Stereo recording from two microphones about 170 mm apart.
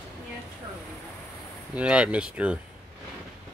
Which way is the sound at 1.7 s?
5° right (ahead or behind).